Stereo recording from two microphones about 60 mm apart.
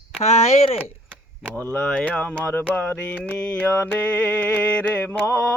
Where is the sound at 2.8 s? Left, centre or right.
Left.